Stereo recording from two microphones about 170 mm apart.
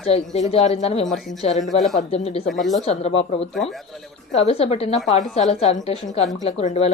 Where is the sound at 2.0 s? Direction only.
40° left (ahead or behind).